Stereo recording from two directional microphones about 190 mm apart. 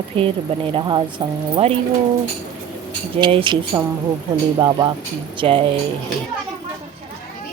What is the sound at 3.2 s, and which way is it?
Speech, 25° right (ahead or behind).